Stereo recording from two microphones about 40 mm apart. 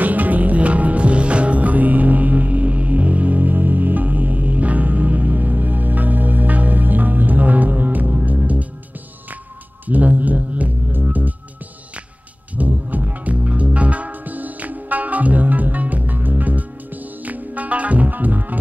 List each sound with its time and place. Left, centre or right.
0.0 s music: right
9.8 s music: right
12.5 s music: right